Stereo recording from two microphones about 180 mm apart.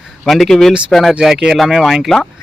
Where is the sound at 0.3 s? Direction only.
Centre (ahead or behind).